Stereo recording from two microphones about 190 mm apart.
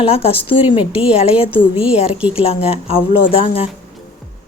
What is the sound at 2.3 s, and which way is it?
Speech, 30° left (ahead or behind).